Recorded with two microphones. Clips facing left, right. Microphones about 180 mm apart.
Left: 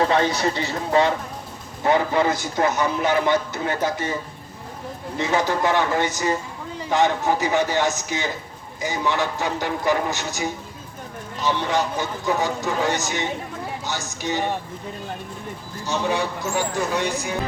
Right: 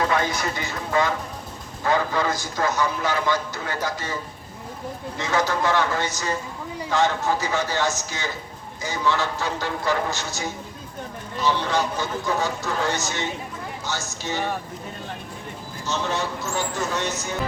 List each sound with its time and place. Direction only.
0.0 s speech: 30° left (ahead or behind)
15.9 s speech: 15° left (ahead or behind)